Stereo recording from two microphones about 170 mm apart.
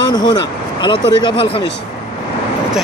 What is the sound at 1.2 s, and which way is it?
Speech, 30° left (ahead or behind).